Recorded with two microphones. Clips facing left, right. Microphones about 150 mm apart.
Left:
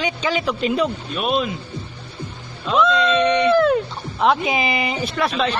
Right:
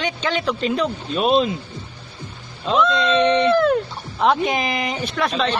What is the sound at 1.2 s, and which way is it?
Speech, 30° right (ahead or behind).